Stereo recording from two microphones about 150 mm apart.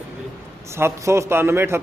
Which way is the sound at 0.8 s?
15° right (ahead or behind).